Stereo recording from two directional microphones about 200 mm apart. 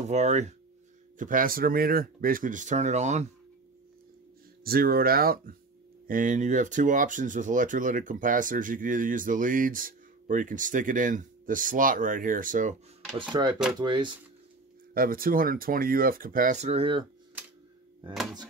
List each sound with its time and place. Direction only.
0.0 s speech: 35° right (ahead or behind)
4.6 s speech: 50° right (ahead or behind)
13.3 s speech: 25° right (ahead or behind)
15.0 s speech: 45° right (ahead or behind); by 17.0 s 30° right (ahead or behind)